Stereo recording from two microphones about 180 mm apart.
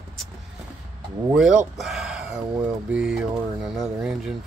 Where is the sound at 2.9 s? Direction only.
5° right (ahead or behind).